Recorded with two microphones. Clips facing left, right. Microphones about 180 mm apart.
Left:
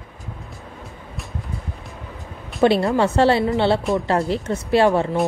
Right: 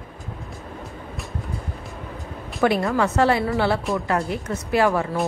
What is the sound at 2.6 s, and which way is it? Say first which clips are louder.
A woman's voice: left 3 dB; 30° left (ahead or behind).